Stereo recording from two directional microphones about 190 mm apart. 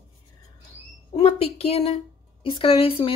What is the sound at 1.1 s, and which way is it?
A woman's voice, 30° left (ahead or behind).